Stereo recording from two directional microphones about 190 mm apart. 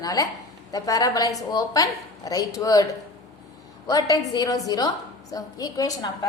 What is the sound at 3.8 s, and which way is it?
A woman's voice, 20° left (ahead or behind).